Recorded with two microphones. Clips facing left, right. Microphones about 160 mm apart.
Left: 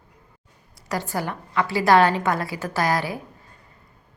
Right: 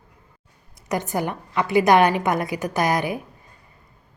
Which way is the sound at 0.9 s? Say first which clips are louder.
Right 3 dB; 20° right (ahead or behind).